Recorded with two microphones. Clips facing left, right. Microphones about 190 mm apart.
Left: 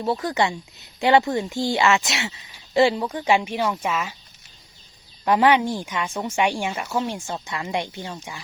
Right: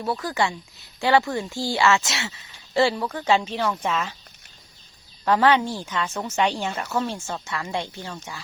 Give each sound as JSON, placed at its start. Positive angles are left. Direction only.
{"t": 0.0, "sound": "speech", "side_deg": 25}
{"t": 5.2, "sound": "a woman's voice", "side_deg": 15}